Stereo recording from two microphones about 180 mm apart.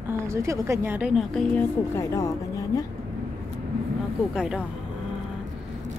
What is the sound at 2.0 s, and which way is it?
Speech, 20° left (ahead or behind).